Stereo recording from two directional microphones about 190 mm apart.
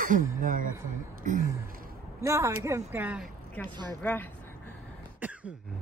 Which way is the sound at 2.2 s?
15° right (ahead or behind).